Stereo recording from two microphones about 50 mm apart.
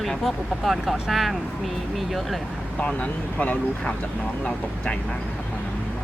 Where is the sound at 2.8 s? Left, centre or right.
Left.